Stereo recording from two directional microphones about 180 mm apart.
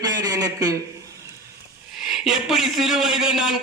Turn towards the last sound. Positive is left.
turn(degrees=-5)  # may be behind; listen again after turning